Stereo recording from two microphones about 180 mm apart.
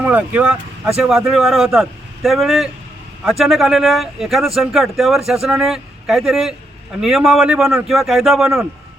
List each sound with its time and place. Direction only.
0.0 s speech: 5° right (ahead or behind)